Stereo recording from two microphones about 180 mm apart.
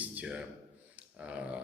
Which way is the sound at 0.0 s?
10° right (ahead or behind).